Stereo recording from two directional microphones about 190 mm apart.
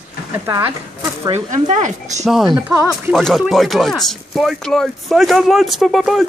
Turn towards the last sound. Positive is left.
turn(degrees=0)  # may be behind; listen again after turning